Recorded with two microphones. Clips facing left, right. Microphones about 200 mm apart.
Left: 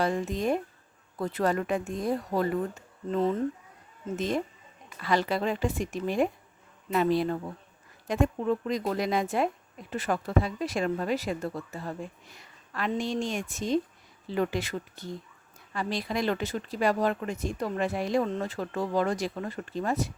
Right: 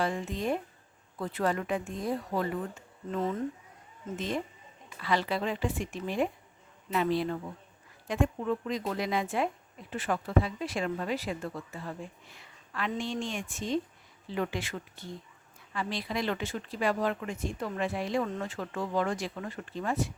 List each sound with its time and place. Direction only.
0.0 s speech: 40° left (ahead or behind)
4.9 s speech: 45° left (ahead or behind)